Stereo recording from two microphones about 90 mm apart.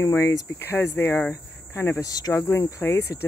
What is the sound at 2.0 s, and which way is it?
Speech, 45° left (ahead or behind).